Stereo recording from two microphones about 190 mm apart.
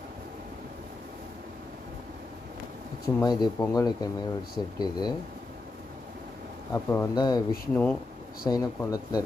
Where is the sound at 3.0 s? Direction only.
20° left (ahead or behind).